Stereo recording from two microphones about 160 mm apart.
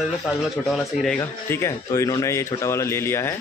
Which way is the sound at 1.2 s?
15° left (ahead or behind).